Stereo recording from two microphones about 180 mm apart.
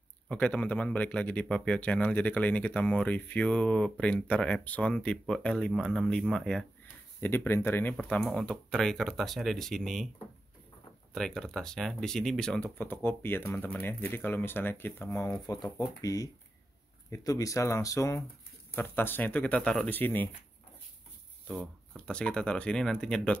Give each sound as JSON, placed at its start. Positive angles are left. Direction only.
{"t": 0.3, "sound": "speech", "side_deg": 5}
{"t": 11.1, "sound": "speech", "side_deg": 0}
{"t": 21.5, "sound": "speech", "side_deg": 0}